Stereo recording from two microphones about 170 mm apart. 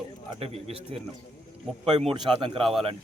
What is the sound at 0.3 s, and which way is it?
Speech, 35° right (ahead or behind).